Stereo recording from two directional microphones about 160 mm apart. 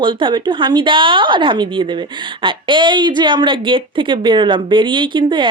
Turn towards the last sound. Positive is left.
turn(degrees=-30)  # may be behind; listen again after turning